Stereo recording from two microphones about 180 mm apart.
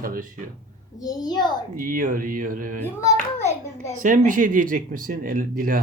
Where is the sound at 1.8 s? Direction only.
50° right (ahead or behind).